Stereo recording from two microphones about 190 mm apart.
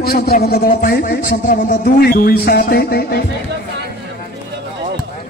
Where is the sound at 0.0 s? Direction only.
55° left (ahead or behind).